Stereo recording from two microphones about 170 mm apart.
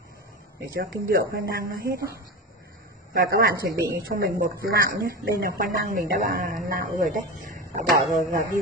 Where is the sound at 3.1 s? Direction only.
60° right (ahead or behind).